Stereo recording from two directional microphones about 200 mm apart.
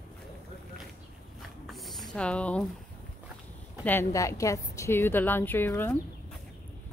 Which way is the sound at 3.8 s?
10° left (ahead or behind).